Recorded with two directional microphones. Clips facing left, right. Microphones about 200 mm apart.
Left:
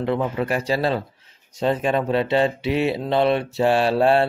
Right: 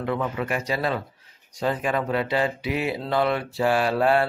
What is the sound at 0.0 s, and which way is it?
Speech, 30° left (ahead or behind).